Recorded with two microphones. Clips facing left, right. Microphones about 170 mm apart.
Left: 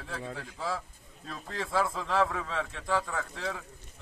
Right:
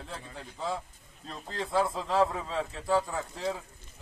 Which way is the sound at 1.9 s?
25° right (ahead or behind).